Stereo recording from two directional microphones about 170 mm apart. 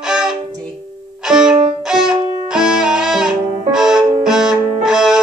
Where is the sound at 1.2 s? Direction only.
5° right (ahead or behind).